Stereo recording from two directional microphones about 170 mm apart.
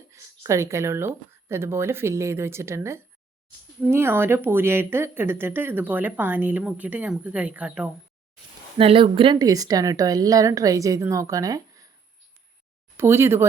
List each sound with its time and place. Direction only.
0.1 s speech: 15° right (ahead or behind)
8.8 s speech: 35° right (ahead or behind)
13.0 s speech: 15° right (ahead or behind)